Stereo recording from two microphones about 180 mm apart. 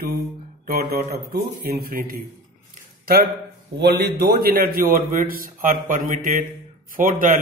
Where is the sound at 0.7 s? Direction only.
55° right (ahead or behind).